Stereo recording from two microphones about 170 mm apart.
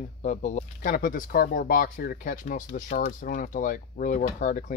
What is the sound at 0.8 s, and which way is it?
Speech, 55° left (ahead or behind).